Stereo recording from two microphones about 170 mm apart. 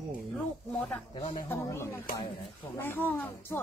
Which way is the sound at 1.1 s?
30° left (ahead or behind).